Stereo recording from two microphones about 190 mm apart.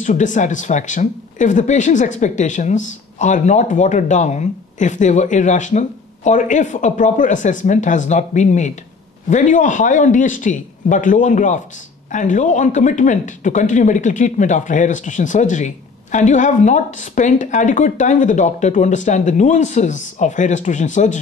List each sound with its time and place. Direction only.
0.0 s speech: 40° left (ahead or behind)